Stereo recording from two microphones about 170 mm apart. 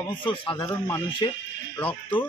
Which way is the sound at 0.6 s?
20° left (ahead or behind).